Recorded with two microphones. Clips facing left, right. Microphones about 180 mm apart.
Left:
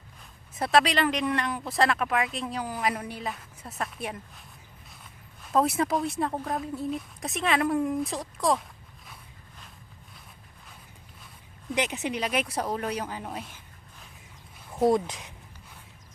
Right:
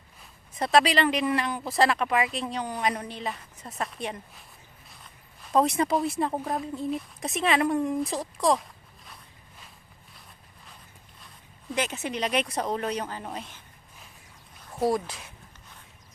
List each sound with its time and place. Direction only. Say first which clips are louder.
0.2 s speech: right 1 dB; centre (ahead or behind)
11.7 s speech: left 1 dB; 15° left (ahead or behind)
12.2 s speech: right 3 dB; 5° left (ahead or behind)
14.7 s speech: left 3 dB; 20° left (ahead or behind)